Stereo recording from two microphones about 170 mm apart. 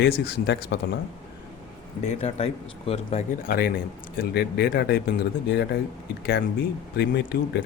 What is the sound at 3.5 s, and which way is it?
Speech, 60° left (ahead or behind).